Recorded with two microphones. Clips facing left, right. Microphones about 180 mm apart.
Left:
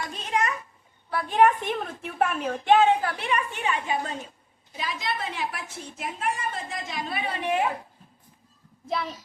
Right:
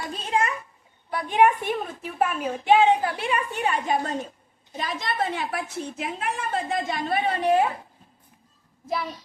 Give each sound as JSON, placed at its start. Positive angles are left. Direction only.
{"t": 0.1, "sound": "a sound", "side_deg": -30}
{"t": 1.1, "sound": "a woman's voice", "side_deg": -15}
{"t": 3.0, "sound": "a woman's voice", "side_deg": -25}
{"t": 8.9, "sound": "a child's voice", "side_deg": -5}